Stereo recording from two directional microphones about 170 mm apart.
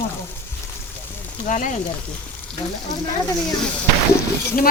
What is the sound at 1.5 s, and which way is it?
Speech, 50° left (ahead or behind).